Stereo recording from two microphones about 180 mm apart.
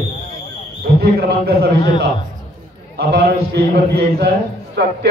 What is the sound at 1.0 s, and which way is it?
Speech, 65° right (ahead or behind).